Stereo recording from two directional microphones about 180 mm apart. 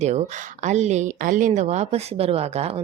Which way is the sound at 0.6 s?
40° right (ahead or behind).